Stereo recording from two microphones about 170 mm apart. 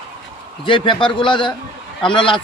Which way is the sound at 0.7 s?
30° left (ahead or behind).